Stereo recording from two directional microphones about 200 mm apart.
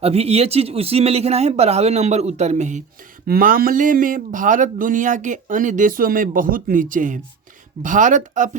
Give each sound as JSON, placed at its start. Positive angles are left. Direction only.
{"t": 0.0, "sound": "speech", "side_deg": -30}